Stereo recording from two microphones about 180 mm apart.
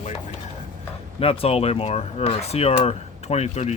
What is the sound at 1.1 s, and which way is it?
Speech, 30° left (ahead or behind).